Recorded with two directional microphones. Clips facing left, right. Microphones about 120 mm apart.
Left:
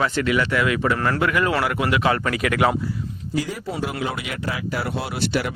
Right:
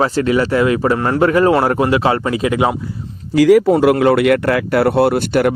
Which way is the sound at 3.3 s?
90° right.